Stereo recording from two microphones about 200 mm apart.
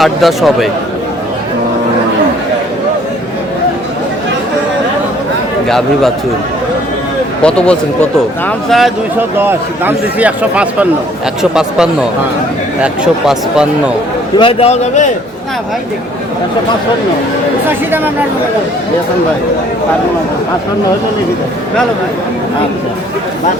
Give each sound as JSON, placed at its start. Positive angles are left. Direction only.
{"t": 0.0, "sound": "speech", "side_deg": 0}
{"t": 5.6, "sound": "speech", "side_deg": 0}
{"t": 7.4, "sound": "speech", "side_deg": 5}
{"t": 9.4, "sound": "speech", "side_deg": -10}
{"t": 12.8, "sound": "speech", "side_deg": -5}
{"t": 14.3, "sound": "a man's voice", "side_deg": 30}